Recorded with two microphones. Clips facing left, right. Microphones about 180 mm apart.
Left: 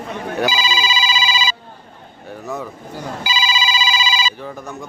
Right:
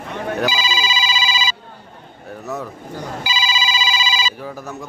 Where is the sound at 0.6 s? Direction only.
65° left (ahead or behind).